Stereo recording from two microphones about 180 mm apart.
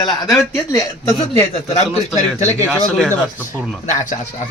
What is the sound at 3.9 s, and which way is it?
Speech, 45° left (ahead or behind).